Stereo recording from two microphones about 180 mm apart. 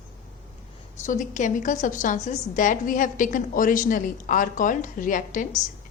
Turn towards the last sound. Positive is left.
turn(degrees=45)  # may be behind; listen again after turning